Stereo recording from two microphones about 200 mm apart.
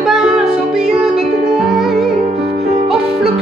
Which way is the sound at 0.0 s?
Centre (ahead or behind).